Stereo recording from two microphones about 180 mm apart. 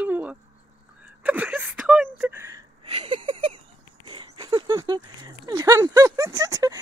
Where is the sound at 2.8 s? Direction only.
25° right (ahead or behind).